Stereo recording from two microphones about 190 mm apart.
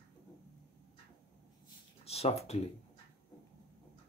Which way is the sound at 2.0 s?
30° left (ahead or behind).